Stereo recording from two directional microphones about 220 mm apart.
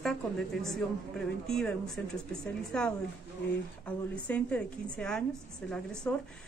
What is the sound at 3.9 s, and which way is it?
A woman's voice, 5° left (ahead or behind).